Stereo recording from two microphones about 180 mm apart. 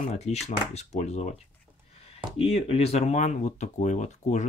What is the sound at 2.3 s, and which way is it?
Speech, 35° left (ahead or behind).